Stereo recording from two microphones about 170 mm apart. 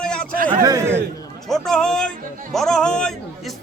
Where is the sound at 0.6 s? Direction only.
20° right (ahead or behind).